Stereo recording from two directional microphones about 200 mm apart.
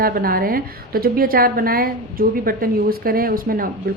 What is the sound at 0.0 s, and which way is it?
A woman's voice, 45° right (ahead or behind).